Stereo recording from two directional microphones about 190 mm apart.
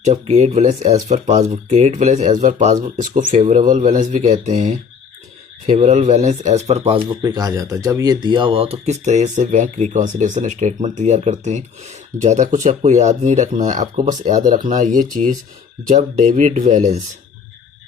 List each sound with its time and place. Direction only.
0.0 s a man's voice: 35° right (ahead or behind)